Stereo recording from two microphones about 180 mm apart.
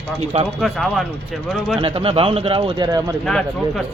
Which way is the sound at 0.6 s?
Centre (ahead or behind).